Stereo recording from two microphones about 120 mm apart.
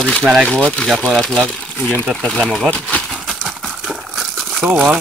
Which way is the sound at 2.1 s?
5° left (ahead or behind).